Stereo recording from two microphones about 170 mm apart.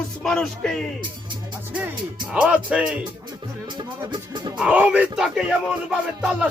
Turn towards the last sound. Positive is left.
turn(degrees=-5)  # may be behind; listen again after turning